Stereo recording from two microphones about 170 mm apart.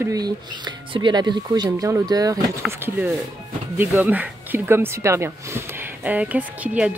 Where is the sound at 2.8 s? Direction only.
10° right (ahead or behind).